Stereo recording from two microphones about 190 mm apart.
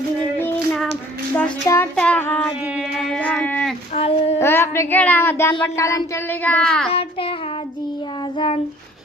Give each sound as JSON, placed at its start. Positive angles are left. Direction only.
{"t": 0.3, "sound": "child singing", "side_deg": 10}
{"t": 2.9, "sound": "a sound", "side_deg": 0}
{"t": 3.9, "sound": "child singing", "side_deg": 30}
{"t": 4.4, "sound": "speech", "side_deg": 10}
{"t": 6.4, "sound": "child singing", "side_deg": 5}
{"t": 6.9, "sound": "child singing", "side_deg": 30}
{"t": 8.4, "sound": "child singing", "side_deg": 35}